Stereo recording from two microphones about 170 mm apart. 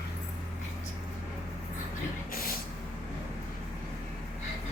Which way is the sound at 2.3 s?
60° left (ahead or behind).